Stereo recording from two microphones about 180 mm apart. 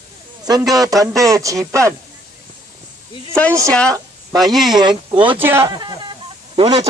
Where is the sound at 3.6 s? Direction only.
5° left (ahead or behind).